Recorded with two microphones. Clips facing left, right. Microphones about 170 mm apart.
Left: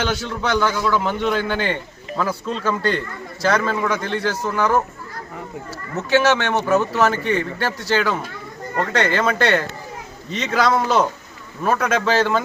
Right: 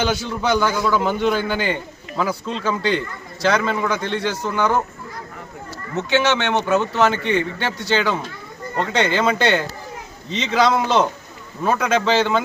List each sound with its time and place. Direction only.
0.0 s speech: centre (ahead or behind)
6.0 s speech: 5° left (ahead or behind)